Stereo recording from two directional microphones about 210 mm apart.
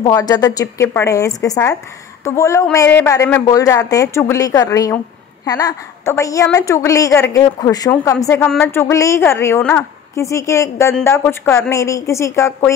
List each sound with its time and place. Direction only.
0.0 s a woman's voice: 20° left (ahead or behind)